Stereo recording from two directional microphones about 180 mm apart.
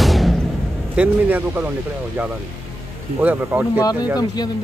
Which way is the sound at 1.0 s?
10° right (ahead or behind).